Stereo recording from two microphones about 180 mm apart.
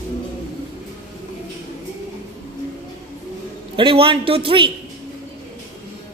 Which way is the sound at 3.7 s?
30° right (ahead or behind).